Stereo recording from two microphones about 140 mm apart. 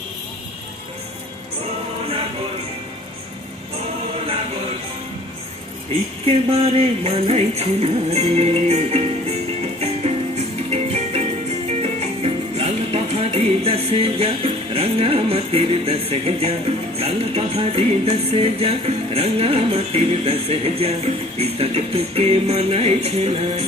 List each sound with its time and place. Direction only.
6.2 s music: 45° right (ahead or behind)
11.7 s speech: 45° right (ahead or behind)